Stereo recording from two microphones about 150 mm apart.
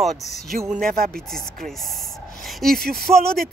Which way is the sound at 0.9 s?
85° right.